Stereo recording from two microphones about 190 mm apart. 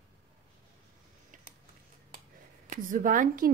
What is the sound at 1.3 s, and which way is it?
Tick-tock, 45° right (ahead or behind).